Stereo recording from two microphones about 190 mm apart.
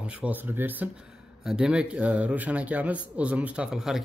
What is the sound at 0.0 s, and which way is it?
A man's voice, 5° right (ahead or behind).